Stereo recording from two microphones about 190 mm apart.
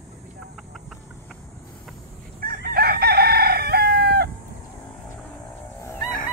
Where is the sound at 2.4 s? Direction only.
55° right (ahead or behind).